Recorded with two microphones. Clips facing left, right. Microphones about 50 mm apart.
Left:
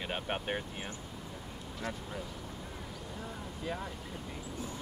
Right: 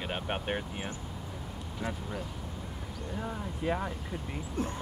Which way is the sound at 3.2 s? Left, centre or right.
Right.